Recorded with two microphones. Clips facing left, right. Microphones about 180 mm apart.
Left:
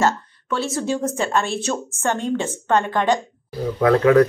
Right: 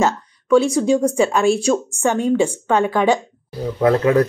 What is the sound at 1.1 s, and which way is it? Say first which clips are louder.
Speech: right 6 dB; centre (ahead or behind).